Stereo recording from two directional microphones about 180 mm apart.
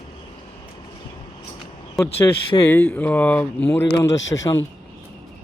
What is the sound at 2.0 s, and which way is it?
A man's voice, 20° left (ahead or behind).